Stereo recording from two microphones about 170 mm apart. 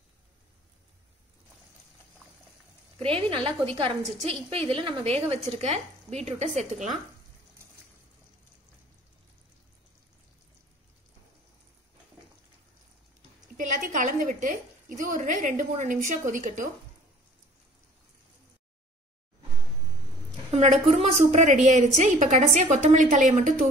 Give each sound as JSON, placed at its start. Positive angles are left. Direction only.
{"t": 3.0, "sound": "speech", "side_deg": -35}
{"t": 13.6, "sound": "a woman's voice", "side_deg": -50}
{"t": 20.9, "sound": "a woman's voice", "side_deg": -40}